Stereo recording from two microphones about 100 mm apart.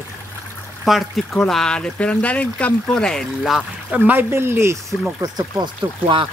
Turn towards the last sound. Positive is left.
turn(degrees=-55)  # may be behind; listen again after turning